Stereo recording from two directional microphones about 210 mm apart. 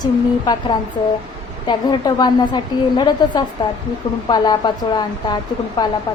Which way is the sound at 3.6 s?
20° left (ahead or behind).